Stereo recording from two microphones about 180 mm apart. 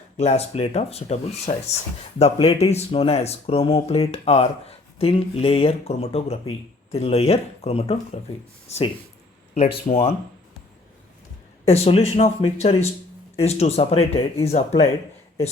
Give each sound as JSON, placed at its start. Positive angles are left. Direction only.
{"t": 0.2, "sound": "speech", "side_deg": 35}
{"t": 9.6, "sound": "speech", "side_deg": 30}
{"t": 11.6, "sound": "speech", "side_deg": 35}